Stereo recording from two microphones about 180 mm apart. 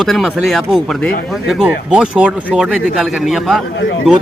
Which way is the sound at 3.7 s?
80° left.